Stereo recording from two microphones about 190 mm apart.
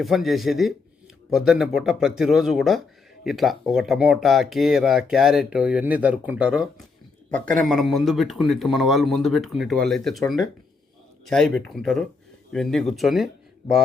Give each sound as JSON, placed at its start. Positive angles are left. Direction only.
{"t": 0.0, "sound": "speech", "side_deg": 0}
{"t": 7.3, "sound": "speech", "side_deg": 5}